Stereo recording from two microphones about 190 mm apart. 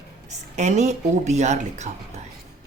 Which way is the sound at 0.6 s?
35° right (ahead or behind).